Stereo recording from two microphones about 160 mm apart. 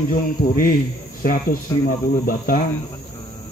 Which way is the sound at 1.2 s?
60° left (ahead or behind).